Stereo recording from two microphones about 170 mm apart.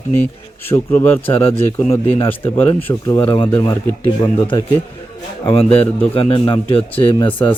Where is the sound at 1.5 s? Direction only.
35° left (ahead or behind).